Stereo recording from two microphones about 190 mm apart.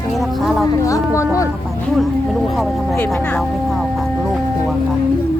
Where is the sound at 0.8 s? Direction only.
15° left (ahead or behind).